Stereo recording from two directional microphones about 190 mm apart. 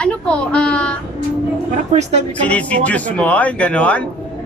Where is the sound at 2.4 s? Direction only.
5° left (ahead or behind).